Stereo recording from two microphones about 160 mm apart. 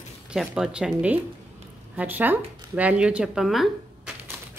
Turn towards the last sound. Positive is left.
turn(degrees=0)  # may be behind; listen again after turning